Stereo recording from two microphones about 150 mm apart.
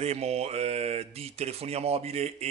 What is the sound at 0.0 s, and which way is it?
A man's voice, 45° right (ahead or behind).